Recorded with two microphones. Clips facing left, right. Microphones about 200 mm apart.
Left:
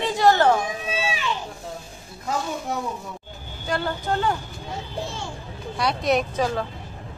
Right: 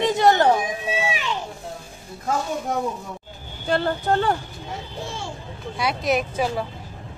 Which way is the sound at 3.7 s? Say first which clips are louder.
Right 4 dB; 30° right (ahead or behind).